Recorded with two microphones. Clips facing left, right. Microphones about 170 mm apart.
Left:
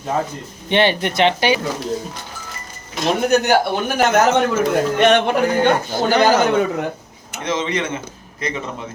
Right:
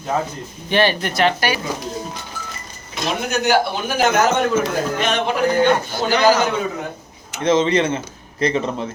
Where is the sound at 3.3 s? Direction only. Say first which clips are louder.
Left 1 dB; 55° left (ahead or behind).